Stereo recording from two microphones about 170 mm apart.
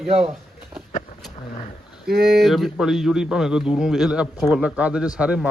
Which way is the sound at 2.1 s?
65° right (ahead or behind).